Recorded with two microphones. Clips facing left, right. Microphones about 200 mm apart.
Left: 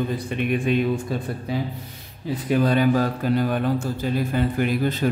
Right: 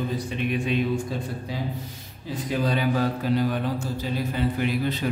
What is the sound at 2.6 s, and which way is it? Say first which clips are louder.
Mantra: left 4 dB; 50° left (ahead or behind).